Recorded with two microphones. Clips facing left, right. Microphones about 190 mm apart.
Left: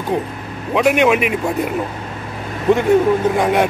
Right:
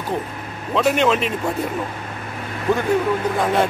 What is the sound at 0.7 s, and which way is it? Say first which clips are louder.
Speech: left 4 dB; 10° left (ahead or behind).